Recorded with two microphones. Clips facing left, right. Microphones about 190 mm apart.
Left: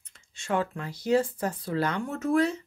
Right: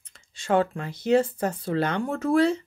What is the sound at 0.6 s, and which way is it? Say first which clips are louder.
Speech: right 5 dB; 25° right (ahead or behind).